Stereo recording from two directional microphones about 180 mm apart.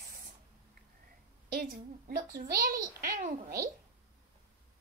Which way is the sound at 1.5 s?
55° right (ahead or behind).